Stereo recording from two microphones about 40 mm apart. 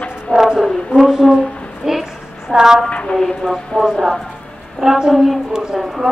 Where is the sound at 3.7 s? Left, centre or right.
Centre.